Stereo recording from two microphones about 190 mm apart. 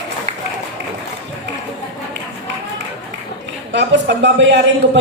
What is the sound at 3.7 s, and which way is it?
A man's voice, 70° right (ahead or behind).